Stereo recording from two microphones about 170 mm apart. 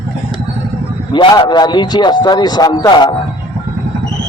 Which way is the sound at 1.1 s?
25° left (ahead or behind).